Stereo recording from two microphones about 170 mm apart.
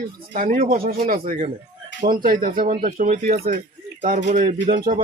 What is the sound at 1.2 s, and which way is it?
Speech, 45° right (ahead or behind).